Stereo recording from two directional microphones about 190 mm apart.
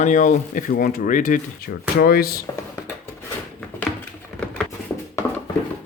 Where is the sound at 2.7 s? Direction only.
15° left (ahead or behind).